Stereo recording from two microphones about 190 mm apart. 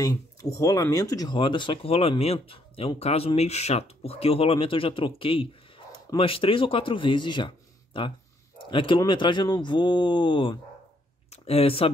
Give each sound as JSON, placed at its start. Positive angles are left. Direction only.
{"t": 0.0, "sound": "speech", "side_deg": 15}